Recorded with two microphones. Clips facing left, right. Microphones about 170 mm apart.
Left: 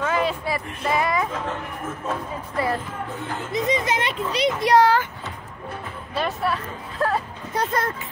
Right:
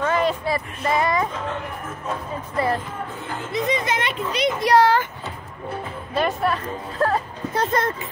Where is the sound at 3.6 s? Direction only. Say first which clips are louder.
Left 1 dB; 35° left (ahead or behind).